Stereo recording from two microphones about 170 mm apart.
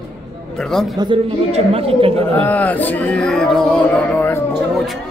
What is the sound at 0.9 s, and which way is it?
A woman's voice, 25° right (ahead or behind).